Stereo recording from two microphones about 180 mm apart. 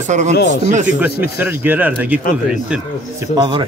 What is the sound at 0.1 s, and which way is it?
Speech, 45° right (ahead or behind).